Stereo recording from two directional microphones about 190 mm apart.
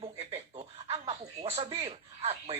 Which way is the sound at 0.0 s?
30° right (ahead or behind).